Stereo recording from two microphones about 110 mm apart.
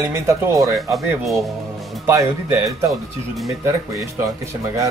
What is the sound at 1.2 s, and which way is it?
Music, centre (ahead or behind).